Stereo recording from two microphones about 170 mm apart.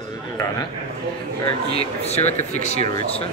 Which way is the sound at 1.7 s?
40° left (ahead or behind).